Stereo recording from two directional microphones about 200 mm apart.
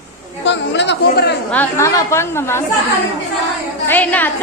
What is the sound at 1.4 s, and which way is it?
A woman's voice, 10° left (ahead or behind).